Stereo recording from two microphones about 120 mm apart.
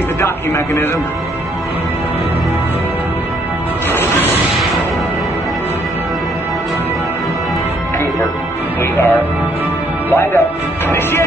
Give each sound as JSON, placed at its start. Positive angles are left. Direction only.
{"t": 0.2, "sound": "a man's voice", "side_deg": 20}
{"t": 10.0, "sound": "a man's voice", "side_deg": 20}